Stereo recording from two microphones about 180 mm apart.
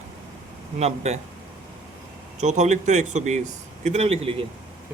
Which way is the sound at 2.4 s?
40° right (ahead or behind).